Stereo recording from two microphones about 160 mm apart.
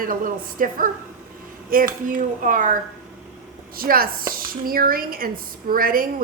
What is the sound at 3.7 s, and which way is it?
A woman's voice, 65° right (ahead or behind).